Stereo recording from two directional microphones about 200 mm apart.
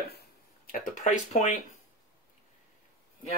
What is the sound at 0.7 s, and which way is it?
Speech, 45° left (ahead or behind).